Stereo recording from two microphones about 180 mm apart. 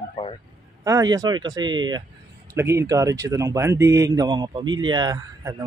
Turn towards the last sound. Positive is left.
turn(degrees=-20)  # may be behind; listen again after turning